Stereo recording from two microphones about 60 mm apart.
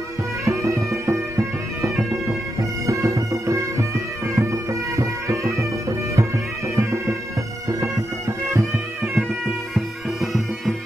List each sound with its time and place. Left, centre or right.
0.5 s bagpipes: right
2.9 s music: right
6.7 s bagpipes: right
9.8 s bagpipes: centre